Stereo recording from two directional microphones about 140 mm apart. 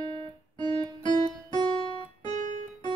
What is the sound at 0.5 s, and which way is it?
Music, 30° left (ahead or behind).